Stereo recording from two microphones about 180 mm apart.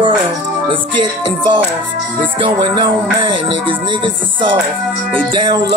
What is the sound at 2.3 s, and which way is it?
Music, 30° right (ahead or behind).